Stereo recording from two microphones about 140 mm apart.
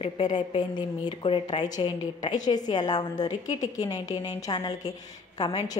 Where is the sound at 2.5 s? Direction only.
30° left (ahead or behind).